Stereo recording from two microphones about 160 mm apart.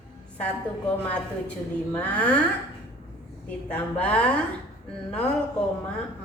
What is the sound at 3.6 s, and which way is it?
Speech, 10° left (ahead or behind).